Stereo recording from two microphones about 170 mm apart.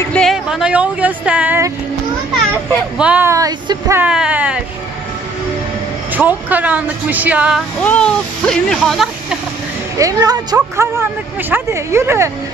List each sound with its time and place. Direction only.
0.0 s speech: 5° left (ahead or behind)
3.0 s speech: 10° right (ahead or behind)
4.1 s speech: 5° right (ahead or behind)
6.1 s speech: 10° right (ahead or behind)
7.8 s speech: 5° left (ahead or behind)
9.9 s speech: 20° right (ahead or behind)